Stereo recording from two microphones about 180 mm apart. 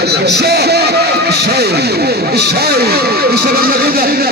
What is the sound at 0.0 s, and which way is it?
Music, 65° right (ahead or behind).